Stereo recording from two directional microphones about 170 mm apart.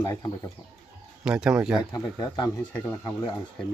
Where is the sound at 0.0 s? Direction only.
20° left (ahead or behind).